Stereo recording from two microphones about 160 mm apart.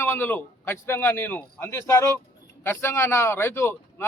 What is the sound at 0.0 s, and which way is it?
A man's voice, 15° left (ahead or behind).